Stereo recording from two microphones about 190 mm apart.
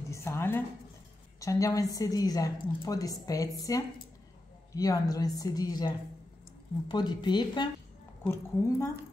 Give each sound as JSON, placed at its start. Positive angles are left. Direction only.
{"t": 0.1, "sound": "a woman's voice", "side_deg": 15}